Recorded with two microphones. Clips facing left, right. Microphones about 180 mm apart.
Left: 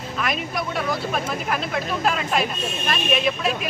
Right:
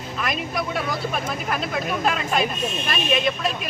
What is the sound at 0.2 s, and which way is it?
Speech, centre (ahead or behind).